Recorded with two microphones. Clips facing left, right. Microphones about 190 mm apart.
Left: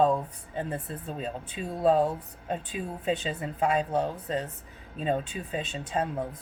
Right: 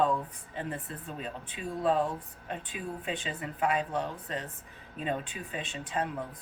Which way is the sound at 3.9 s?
40° left (ahead or behind).